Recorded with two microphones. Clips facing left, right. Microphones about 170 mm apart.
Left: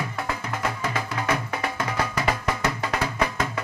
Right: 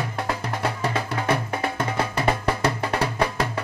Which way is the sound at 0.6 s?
30° right (ahead or behind).